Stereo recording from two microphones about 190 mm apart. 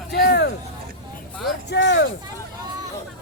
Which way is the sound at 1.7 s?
65° left (ahead or behind).